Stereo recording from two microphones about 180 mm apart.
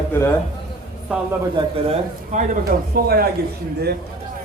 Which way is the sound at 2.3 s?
45° right (ahead or behind).